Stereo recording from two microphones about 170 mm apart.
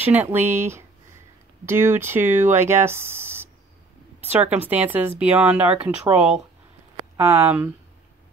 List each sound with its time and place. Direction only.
0.1 s speech: 10° right (ahead or behind)